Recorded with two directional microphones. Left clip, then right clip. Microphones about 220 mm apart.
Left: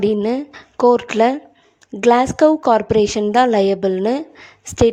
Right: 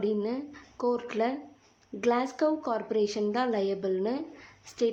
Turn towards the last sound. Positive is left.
turn(degrees=40)  # may be behind; listen again after turning